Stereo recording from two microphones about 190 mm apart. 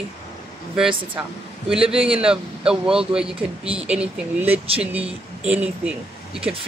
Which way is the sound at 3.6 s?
30° right (ahead or behind).